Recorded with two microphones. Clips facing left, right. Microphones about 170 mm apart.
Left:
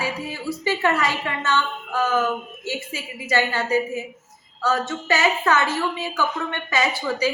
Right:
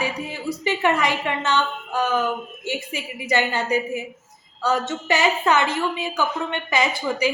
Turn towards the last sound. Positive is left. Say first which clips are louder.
# right 1 dB
turn(degrees=-15)  # may be behind; listen again after turning